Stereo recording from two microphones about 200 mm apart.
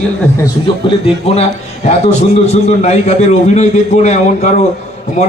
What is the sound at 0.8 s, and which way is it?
A man's voice, 25° left (ahead or behind).